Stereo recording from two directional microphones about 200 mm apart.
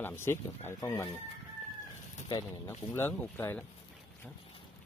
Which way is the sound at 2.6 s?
10° left (ahead or behind).